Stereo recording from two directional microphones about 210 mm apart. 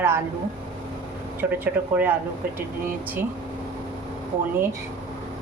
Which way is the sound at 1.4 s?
10° right (ahead or behind).